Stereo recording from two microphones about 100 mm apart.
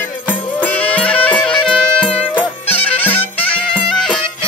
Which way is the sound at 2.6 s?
90° left.